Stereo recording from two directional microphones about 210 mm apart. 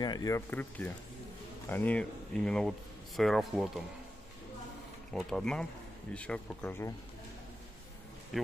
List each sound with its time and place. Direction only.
0.0 s speech: 20° left (ahead or behind); by 3.8 s centre (ahead or behind)
5.1 s speech: centre (ahead or behind)